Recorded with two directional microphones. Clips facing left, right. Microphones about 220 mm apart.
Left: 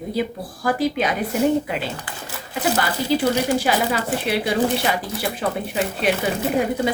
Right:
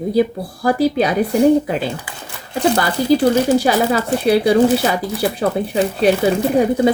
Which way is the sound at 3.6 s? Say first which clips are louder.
Right 5 dB; 40° right (ahead or behind).